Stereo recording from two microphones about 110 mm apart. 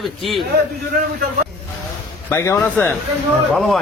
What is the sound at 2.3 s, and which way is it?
Speech, 25° left (ahead or behind).